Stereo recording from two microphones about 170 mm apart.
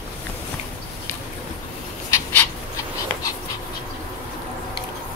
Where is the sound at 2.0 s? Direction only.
20° left (ahead or behind).